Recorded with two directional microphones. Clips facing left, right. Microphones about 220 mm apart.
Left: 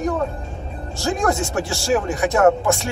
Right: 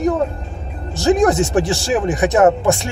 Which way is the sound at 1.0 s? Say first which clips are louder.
Right 7 dB; 20° right (ahead or behind).